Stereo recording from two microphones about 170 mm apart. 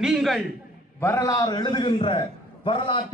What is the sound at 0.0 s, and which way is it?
Speech, centre (ahead or behind).